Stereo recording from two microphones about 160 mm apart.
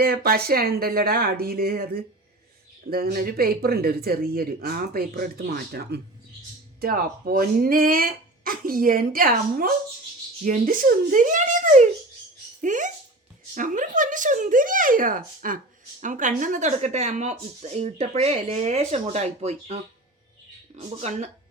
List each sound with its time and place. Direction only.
0.0 s speech: 65° right (ahead or behind); by 21.2 s 40° right (ahead or behind)